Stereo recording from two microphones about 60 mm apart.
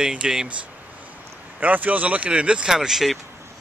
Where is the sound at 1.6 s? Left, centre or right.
Right; by 3.1 s centre.